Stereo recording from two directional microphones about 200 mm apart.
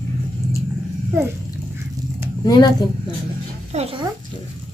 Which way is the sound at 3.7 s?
30° right (ahead or behind).